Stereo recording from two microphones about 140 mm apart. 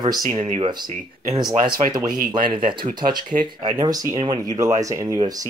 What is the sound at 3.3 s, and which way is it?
Speech, 65° right (ahead or behind).